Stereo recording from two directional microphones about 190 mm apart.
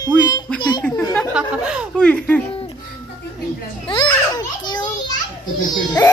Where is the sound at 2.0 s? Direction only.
5° left (ahead or behind).